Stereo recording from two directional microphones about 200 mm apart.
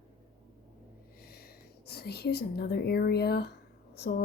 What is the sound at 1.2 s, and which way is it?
A woman's voice, 50° left (ahead or behind).